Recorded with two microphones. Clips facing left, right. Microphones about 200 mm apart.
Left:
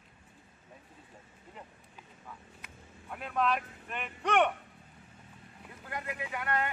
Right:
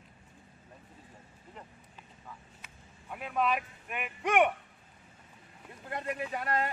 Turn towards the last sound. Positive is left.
turn(degrees=-30)  # may be behind; listen again after turning